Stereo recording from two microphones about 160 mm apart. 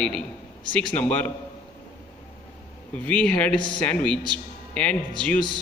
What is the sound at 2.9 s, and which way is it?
A man's voice, 10° left (ahead or behind).